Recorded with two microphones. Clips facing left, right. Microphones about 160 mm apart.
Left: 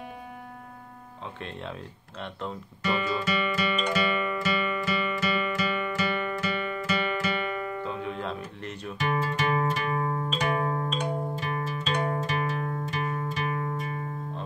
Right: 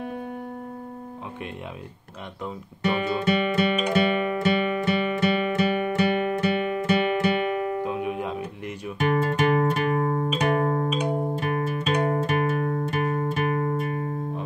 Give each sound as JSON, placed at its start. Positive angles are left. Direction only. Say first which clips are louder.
{"t": 2.8, "sound": "guitar", "louder": "right 4 dB", "side_deg": -55}
{"t": 3.9, "sound": "music", "louder": "right 5 dB", "side_deg": -55}
{"t": 7.8, "sound": "music", "louder": "right 5 dB", "side_deg": -15}
{"t": 8.9, "sound": "music", "louder": "right 6 dB", "side_deg": -55}